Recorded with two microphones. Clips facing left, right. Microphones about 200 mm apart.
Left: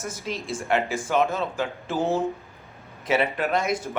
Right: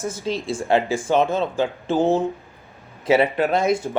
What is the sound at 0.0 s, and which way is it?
Speech, 30° right (ahead or behind).